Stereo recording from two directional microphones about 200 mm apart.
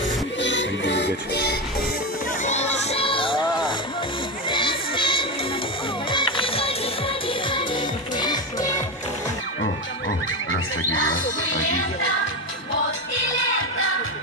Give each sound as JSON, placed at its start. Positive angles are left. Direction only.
{"t": 0.4, "sound": "music", "side_deg": 65}
{"t": 2.4, "sound": "music", "side_deg": 35}
{"t": 9.6, "sound": "music", "side_deg": 70}
{"t": 13.6, "sound": "music", "side_deg": 80}